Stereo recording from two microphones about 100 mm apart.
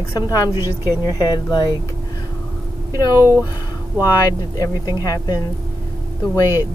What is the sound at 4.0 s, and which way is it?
Speech, 40° left (ahead or behind).